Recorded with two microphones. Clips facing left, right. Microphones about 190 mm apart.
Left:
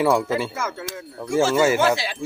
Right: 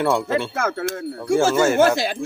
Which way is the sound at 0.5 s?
60° right (ahead or behind).